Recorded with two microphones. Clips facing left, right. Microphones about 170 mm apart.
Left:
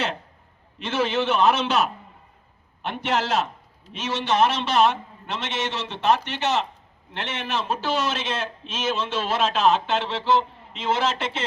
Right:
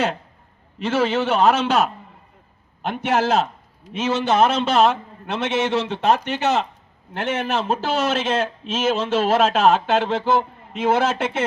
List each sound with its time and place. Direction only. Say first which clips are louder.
0.8 s a man's voice: right 4 dB; 50° right (ahead or behind)